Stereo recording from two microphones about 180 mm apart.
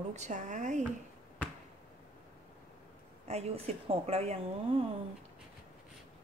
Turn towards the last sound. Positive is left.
turn(degrees=-35)  # may be behind; listen again after turning